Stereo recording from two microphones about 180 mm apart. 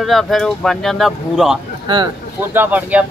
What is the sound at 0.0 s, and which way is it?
Speech, centre (ahead or behind).